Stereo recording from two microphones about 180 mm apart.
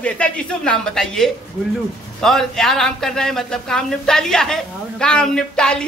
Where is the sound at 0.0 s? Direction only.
5° left (ahead or behind).